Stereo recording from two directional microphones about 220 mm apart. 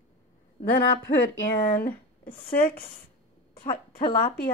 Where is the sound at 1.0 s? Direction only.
45° left (ahead or behind).